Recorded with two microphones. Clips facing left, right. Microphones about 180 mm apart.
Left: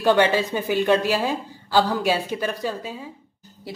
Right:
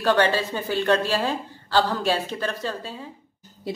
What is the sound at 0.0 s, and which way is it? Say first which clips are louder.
A woman's voice: left 2 dB; 15° left (ahead or behind).